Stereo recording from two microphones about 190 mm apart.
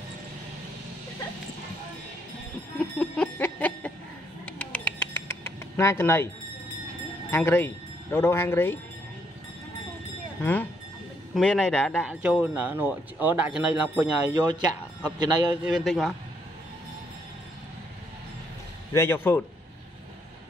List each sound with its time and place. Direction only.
3.0 s music: 10° left (ahead or behind)
4.5 s bird: 10° left (ahead or behind)
7.2 s speech: 10° left (ahead or behind)
10.4 s speech: 10° left (ahead or behind); by 14.1 s 5° right (ahead or behind)
14.3 s a man's voice: 25° right (ahead or behind)
15.6 s speech: centre (ahead or behind)
18.9 s speech: 10° left (ahead or behind)